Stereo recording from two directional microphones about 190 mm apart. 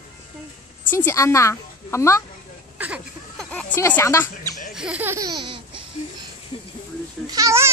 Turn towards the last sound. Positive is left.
turn(degrees=-15)  # may be behind; listen again after turning